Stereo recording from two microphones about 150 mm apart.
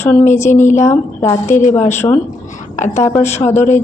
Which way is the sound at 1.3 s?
55° left (ahead or behind).